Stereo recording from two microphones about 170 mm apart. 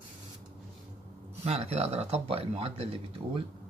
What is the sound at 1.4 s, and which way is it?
Speech, 35° right (ahead or behind).